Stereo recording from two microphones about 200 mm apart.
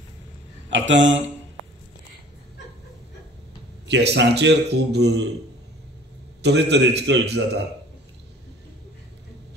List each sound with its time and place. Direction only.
0.7 s a man's voice: 70° right (ahead or behind)
3.9 s a man's voice: 60° right (ahead or behind)
6.4 s a man's voice: 60° right (ahead or behind)